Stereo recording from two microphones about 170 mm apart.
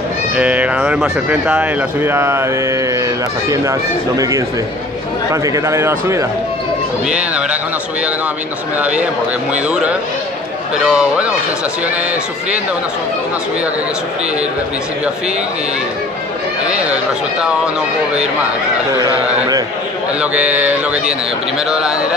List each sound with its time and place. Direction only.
0.4 s speech: 10° right (ahead or behind)
5.3 s speech: 20° right (ahead or behind)
8.7 s speech: 10° right (ahead or behind)
16.9 s speech: 5° right (ahead or behind)
20.2 s speech: 10° right (ahead or behind)